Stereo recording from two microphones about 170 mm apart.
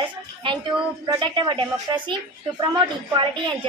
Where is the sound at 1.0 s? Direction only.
25° right (ahead or behind).